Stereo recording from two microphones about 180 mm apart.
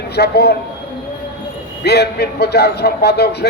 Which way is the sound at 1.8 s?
65° left (ahead or behind).